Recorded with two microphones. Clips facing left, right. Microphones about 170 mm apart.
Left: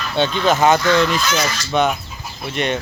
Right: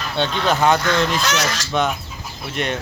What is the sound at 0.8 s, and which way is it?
Speech, 65° right (ahead or behind).